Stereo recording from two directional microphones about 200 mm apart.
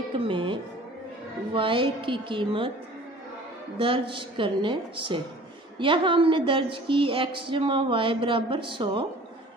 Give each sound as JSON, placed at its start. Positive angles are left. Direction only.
{"t": 0.3, "sound": "a woman's voice", "side_deg": -25}
{"t": 3.7, "sound": "a woman's voice", "side_deg": -25}